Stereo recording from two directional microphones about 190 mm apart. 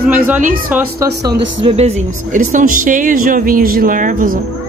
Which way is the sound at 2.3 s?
45° right (ahead or behind).